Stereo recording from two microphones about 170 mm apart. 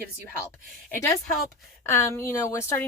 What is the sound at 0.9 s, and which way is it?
A woman's voice, 15° left (ahead or behind).